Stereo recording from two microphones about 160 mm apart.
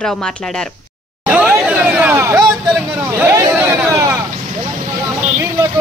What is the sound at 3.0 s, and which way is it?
Vehicle, 20° right (ahead or behind).